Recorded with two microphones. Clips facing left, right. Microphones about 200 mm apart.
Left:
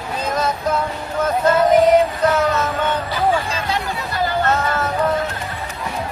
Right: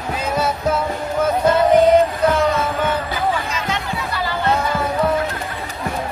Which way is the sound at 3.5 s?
35° left (ahead or behind).